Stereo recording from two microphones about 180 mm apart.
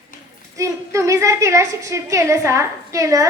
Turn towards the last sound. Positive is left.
turn(degrees=-20)  # may be behind; listen again after turning